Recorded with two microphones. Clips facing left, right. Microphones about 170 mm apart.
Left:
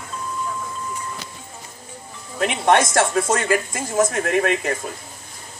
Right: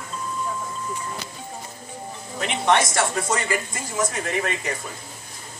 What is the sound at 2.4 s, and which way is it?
Speech, 50° left (ahead or behind).